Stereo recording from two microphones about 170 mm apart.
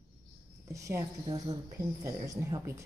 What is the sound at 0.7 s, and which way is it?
Speech, 20° right (ahead or behind).